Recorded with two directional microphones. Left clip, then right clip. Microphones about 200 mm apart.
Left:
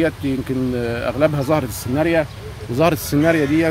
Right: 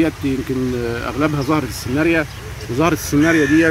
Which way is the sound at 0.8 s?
60° left (ahead or behind).